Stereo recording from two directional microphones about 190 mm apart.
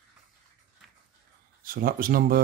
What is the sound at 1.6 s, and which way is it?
Speech, 45° right (ahead or behind).